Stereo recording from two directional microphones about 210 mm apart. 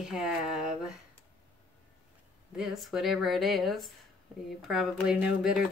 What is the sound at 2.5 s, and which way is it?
Speech, centre (ahead or behind).